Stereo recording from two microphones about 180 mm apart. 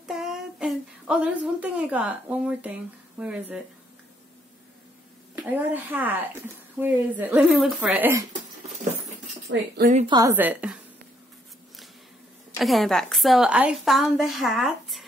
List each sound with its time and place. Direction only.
0.1 s a woman's voice: centre (ahead or behind)
5.3 s speech: 10° right (ahead or behind)
10.0 s a woman's voice: 20° right (ahead or behind)
10.3 s speech: 10° right (ahead or behind)
12.5 s a woman's voice: centre (ahead or behind)